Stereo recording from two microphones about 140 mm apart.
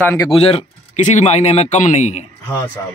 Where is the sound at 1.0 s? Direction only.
60° left (ahead or behind).